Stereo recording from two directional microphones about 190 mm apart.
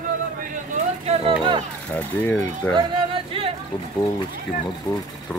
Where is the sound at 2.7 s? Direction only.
25° right (ahead or behind).